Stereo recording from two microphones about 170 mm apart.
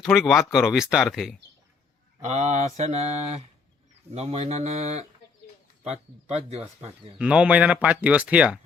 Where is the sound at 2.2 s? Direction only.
40° right (ahead or behind).